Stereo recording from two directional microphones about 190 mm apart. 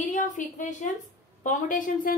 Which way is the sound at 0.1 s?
40° left (ahead or behind).